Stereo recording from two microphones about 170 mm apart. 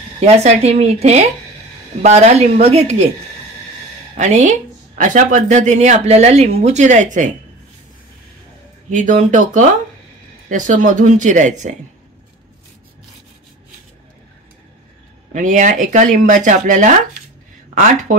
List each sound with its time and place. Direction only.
0.2 s speech: 40° right (ahead or behind)
4.2 s speech: 45° right (ahead or behind)
8.9 s speech: 50° right (ahead or behind)
15.3 s speech: 50° right (ahead or behind)